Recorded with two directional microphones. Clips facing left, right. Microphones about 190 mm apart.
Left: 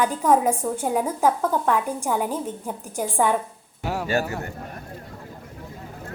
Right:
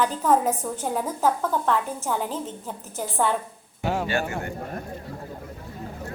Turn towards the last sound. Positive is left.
turn(degrees=40)  # may be behind; listen again after turning